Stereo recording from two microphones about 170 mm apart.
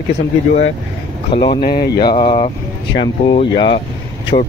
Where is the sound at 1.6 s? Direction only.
60° left (ahead or behind).